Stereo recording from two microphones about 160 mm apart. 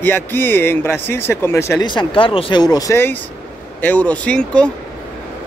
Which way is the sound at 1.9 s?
30° left (ahead or behind).